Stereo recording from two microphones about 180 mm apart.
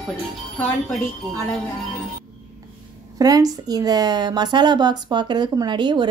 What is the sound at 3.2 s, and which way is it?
A woman's voice, 20° right (ahead or behind).